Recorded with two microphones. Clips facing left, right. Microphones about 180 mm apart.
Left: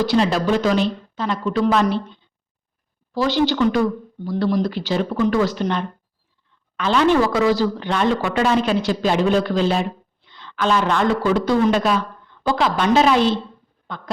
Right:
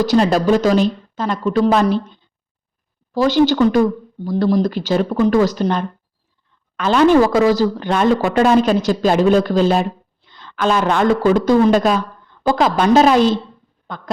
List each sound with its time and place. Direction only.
0.0 s a woman's voice: 45° right (ahead or behind)
3.2 s a woman's voice: 45° right (ahead or behind)
13.8 s a sound: 45° right (ahead or behind)